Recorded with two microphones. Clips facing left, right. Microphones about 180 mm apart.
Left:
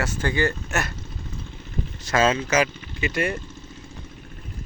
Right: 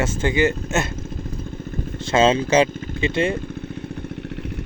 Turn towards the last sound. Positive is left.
turn(degrees=-25)  # may be behind; listen again after turning